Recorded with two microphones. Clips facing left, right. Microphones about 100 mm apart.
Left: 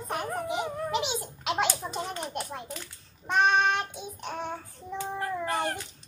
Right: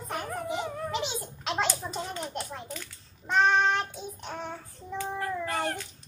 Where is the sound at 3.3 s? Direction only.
15° left (ahead or behind).